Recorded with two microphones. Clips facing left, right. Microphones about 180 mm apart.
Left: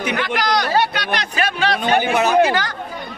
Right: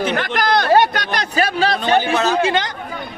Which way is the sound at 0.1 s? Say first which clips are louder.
Right 2 dB; 50° right (ahead or behind).